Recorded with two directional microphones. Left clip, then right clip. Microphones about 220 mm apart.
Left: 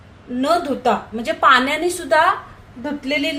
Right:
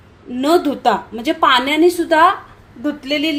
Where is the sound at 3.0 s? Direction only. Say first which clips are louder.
Right 1 dB; 45° right (ahead or behind).